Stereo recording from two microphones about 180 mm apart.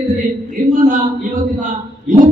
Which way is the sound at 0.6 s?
50° right (ahead or behind).